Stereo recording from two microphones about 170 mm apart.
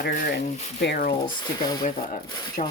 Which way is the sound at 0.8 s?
70° left (ahead or behind).